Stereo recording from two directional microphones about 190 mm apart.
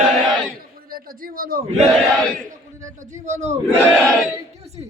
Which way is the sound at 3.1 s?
35° right (ahead or behind).